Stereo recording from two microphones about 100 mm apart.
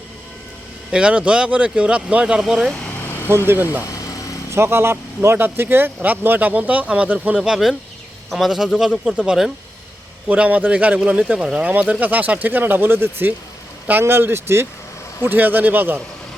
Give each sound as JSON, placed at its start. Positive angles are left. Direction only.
{"t": 0.9, "sound": "speech", "side_deg": -10}
{"t": 3.2, "sound": "speech", "side_deg": -20}